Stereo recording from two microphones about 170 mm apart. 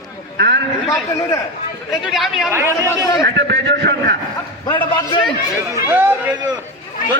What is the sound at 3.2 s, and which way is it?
Speech, 90° right.